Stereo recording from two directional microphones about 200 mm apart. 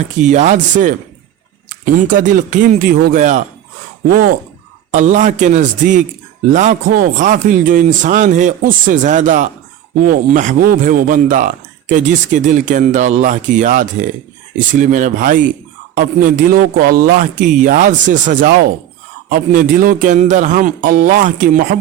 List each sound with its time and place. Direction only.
0.2 s a man's voice: 35° right (ahead or behind)
4.9 s a man's voice: 40° right (ahead or behind)